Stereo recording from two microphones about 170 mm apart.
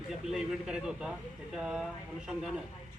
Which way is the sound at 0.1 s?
Centre (ahead or behind).